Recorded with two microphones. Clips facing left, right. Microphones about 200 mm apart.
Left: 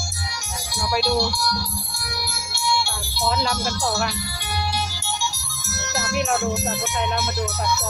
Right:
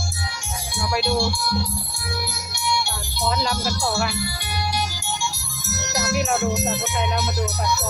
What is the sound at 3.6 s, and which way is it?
Music, 10° right (ahead or behind).